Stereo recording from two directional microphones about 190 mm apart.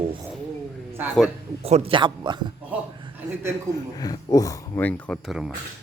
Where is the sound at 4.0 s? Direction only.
20° left (ahead or behind); by 5.5 s centre (ahead or behind).